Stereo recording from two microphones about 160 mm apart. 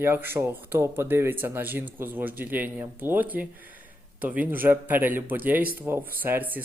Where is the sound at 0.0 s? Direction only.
15° right (ahead or behind).